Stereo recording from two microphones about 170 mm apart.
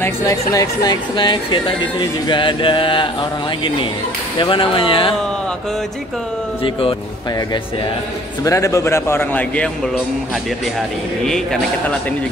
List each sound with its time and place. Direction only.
0.0 s speech: 20° left (ahead or behind)
6.6 s speech: 30° left (ahead or behind)
8.5 s a man's voice: 20° left (ahead or behind)
11.2 s a man's voice: 5° left (ahead or behind)